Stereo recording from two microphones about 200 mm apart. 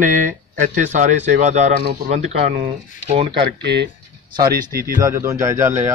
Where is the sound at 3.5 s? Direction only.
60° right (ahead or behind).